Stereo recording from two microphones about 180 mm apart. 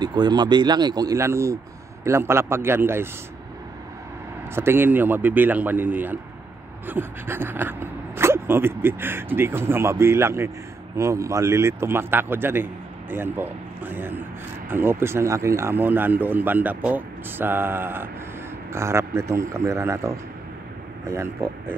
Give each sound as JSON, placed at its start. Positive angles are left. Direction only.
{"t": 0.0, "sound": "speech", "side_deg": -25}
{"t": 4.6, "sound": "speech", "side_deg": -10}